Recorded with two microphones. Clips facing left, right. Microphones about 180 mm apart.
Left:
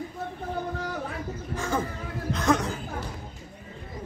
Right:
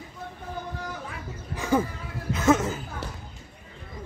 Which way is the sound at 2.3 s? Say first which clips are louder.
Right 3 dB; 5° right (ahead or behind).